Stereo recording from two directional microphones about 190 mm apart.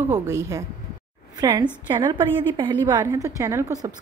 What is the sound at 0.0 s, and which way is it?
A woman's voice, 15° right (ahead or behind).